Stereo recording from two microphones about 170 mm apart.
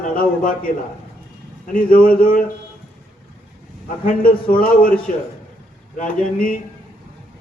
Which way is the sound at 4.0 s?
55° left (ahead or behind).